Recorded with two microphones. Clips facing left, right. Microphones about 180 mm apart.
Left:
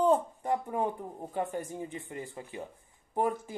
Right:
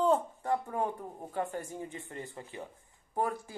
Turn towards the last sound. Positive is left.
turn(degrees=20)  # may be behind; listen again after turning